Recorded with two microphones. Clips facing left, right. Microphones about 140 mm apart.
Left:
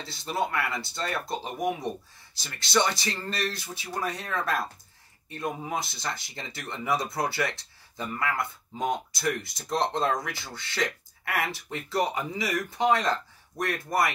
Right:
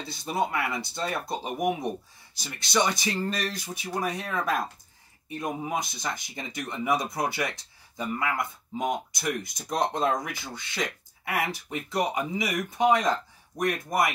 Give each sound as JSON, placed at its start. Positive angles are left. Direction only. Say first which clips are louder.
{"t": 0.1, "sound": "speech", "louder": "right 1 dB", "side_deg": -20}